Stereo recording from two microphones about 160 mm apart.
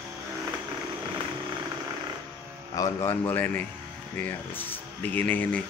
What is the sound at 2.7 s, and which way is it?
Speech, 20° left (ahead or behind).